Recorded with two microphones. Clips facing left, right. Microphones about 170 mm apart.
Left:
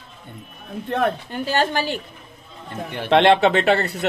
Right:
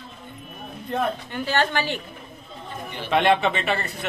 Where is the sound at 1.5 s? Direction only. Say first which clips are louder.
Left 2 dB; 40° left (ahead or behind).